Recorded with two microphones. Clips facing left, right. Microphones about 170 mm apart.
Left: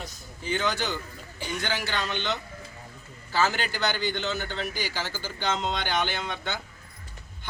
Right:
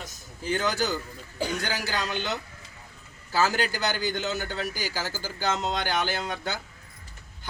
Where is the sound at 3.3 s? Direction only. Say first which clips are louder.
Right 1 dB; 40° right (ahead or behind).